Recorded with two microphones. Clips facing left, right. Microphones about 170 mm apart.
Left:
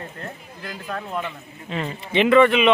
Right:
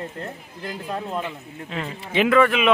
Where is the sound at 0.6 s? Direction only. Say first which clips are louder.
Right 2 dB; 30° right (ahead or behind).